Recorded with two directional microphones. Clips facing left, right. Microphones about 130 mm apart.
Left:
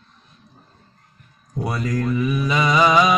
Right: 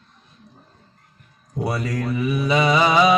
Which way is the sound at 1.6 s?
25° right (ahead or behind).